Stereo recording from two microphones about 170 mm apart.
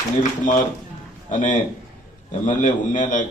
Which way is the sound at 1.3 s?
50° left (ahead or behind).